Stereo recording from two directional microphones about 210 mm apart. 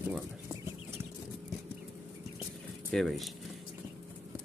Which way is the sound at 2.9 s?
Centre (ahead or behind).